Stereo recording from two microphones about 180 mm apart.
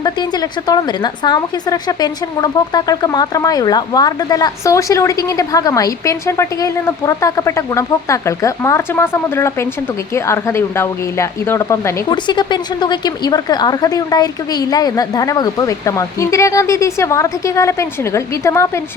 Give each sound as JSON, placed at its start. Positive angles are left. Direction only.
{"t": 0.7, "sound": "a woman's voice", "side_deg": 25}